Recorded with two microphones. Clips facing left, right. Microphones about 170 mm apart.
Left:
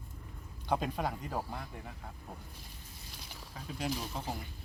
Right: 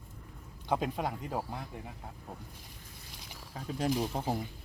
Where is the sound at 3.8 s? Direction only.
50° right (ahead or behind).